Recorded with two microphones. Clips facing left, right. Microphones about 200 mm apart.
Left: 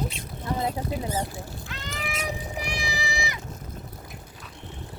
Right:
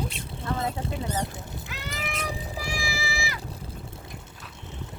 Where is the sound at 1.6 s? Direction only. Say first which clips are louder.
Right 1 dB; centre (ahead or behind).